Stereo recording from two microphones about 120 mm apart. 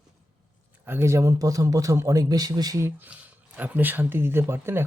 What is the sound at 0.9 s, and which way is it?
A man's voice, 20° right (ahead or behind).